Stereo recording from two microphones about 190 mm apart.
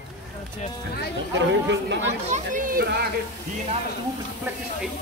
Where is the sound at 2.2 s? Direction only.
40° right (ahead or behind).